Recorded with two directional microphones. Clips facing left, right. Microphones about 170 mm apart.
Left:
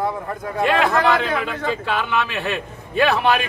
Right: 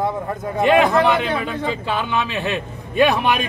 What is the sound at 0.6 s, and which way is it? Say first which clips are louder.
A man's voice: right 3 dB; 20° right (ahead or behind).